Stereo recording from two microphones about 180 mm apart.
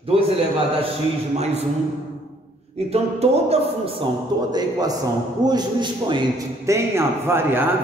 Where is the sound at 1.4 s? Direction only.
35° right (ahead or behind).